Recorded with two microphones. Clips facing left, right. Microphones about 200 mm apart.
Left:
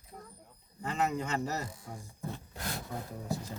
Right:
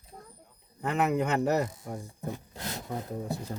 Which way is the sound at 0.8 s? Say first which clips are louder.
Right 5 dB; 60° right (ahead or behind).